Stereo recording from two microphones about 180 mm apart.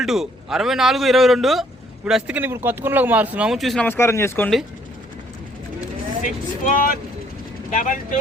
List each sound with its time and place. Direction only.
0.0 s a man's voice: centre (ahead or behind)
3.8 s speech: 15° left (ahead or behind)
6.2 s speech: 50° left (ahead or behind)